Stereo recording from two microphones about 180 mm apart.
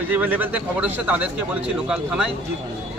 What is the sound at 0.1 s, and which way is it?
A man's voice, 10° right (ahead or behind).